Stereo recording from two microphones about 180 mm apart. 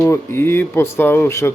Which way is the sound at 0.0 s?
15° left (ahead or behind).